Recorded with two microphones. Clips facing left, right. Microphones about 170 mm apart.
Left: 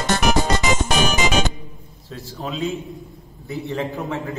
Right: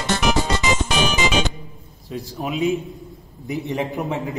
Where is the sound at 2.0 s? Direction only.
15° right (ahead or behind).